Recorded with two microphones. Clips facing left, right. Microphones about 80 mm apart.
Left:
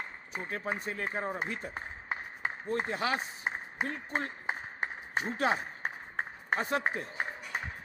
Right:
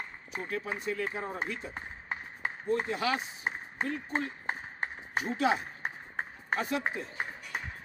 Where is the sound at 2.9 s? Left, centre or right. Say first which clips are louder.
Right 1 dB; left.